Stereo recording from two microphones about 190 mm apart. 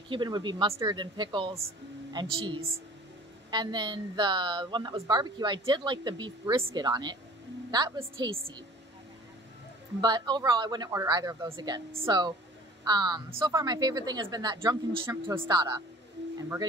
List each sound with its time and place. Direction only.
0.1 s a woman's voice: 25° right (ahead or behind)
9.9 s a woman's voice: 20° right (ahead or behind)